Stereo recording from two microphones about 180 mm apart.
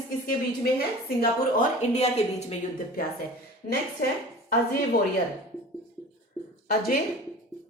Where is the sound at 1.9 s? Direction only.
35° left (ahead or behind).